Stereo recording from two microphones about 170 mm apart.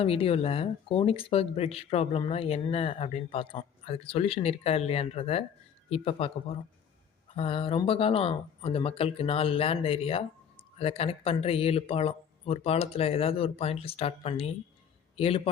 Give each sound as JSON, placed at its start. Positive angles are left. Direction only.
{"t": 0.0, "sound": "a man's voice", "side_deg": 35}